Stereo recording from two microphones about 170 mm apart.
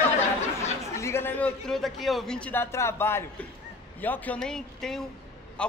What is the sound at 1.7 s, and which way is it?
A man's voice, centre (ahead or behind).